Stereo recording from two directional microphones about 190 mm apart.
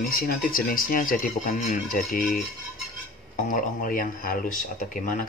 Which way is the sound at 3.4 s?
45° left (ahead or behind).